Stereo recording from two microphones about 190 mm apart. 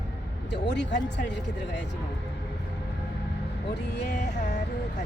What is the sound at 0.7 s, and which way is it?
Speech, 65° left (ahead or behind).